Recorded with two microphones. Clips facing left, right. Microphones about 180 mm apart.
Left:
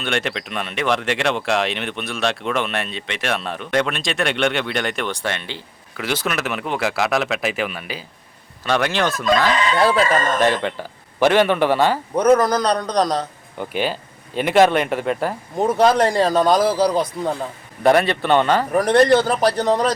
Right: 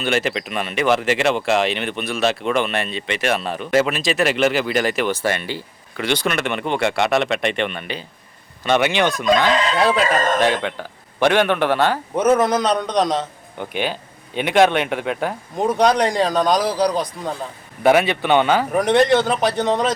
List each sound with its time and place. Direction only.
0.0 s speech: centre (ahead or behind)
12.1 s speech: 5° right (ahead or behind)
12.4 s a man's voice: 25° right (ahead or behind)
13.6 s speech: 5° left (ahead or behind)
16.6 s a man's voice: 15° right (ahead or behind)
17.8 s speech: 5° right (ahead or behind)